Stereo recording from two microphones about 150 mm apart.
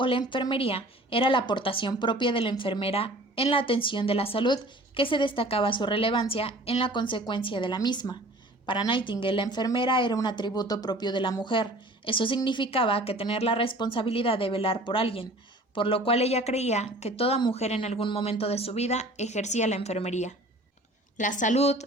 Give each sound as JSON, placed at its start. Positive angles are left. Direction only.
{"t": 0.0, "sound": "a woman's voice", "side_deg": 35}